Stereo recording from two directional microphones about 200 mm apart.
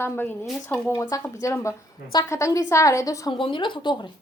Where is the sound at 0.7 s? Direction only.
10° left (ahead or behind).